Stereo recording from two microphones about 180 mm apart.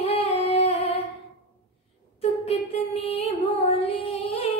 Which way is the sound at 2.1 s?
35° left (ahead or behind).